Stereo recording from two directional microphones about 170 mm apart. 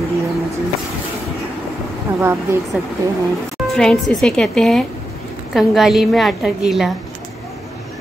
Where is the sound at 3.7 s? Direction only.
Centre (ahead or behind).